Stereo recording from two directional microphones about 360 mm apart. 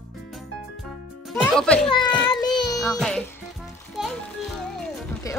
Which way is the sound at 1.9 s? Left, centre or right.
Centre.